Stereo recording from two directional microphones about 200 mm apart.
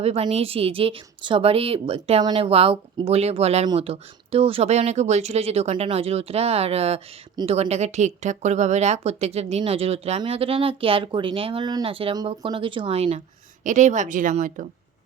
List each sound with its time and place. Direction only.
0.0 s a woman's voice: 30° right (ahead or behind)